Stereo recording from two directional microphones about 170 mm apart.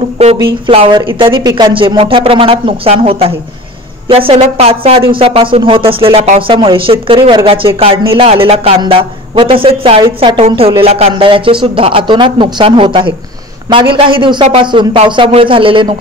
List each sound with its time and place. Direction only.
0.2 s speech: 35° right (ahead or behind)